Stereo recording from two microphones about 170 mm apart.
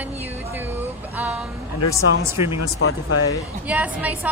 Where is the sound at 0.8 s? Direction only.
10° right (ahead or behind).